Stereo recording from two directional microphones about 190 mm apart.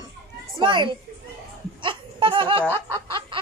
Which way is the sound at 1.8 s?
25° right (ahead or behind).